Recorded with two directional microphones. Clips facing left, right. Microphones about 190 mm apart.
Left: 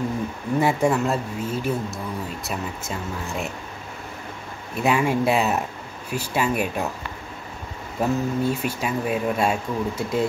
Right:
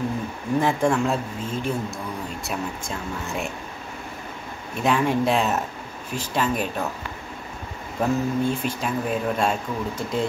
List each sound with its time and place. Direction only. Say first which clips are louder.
0.6 s speech: left 1 dB; 10° left (ahead or behind)
4.8 s speech: left 1 dB; 10° left (ahead or behind)
8.0 s speech: even; 5° left (ahead or behind)